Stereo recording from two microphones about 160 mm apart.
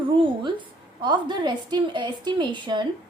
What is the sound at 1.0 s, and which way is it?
A woman's voice, 30° right (ahead or behind).